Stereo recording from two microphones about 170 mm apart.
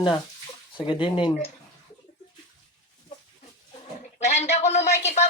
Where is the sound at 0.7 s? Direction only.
30° left (ahead or behind).